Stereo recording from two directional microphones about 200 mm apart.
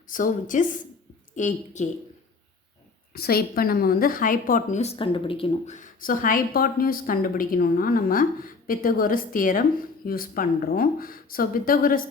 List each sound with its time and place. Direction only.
0.1 s a woman's voice: 40° left (ahead or behind)
3.1 s a woman's voice: 50° left (ahead or behind)